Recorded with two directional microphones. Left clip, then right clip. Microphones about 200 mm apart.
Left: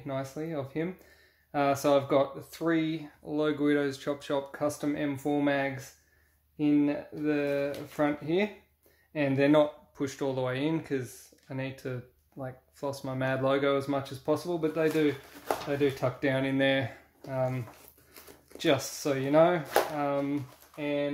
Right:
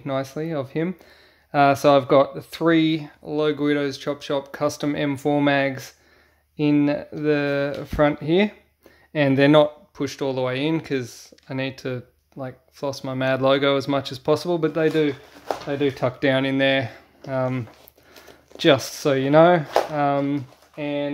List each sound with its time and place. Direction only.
0.0 s speech: 50° right (ahead or behind)
10.0 s speech: 30° right (ahead or behind)
17.3 s speech: 50° right (ahead or behind)